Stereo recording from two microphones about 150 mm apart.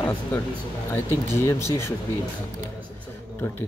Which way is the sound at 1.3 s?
15° left (ahead or behind).